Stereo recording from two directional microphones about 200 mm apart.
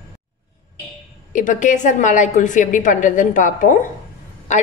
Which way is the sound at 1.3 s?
40° left (ahead or behind).